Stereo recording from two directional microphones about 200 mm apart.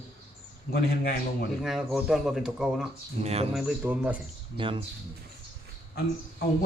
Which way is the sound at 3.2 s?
30° right (ahead or behind).